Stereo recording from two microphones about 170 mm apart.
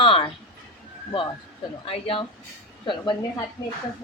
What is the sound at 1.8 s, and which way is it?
A woman's voice, 35° left (ahead or behind).